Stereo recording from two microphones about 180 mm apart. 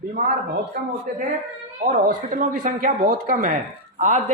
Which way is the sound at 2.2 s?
45° right (ahead or behind).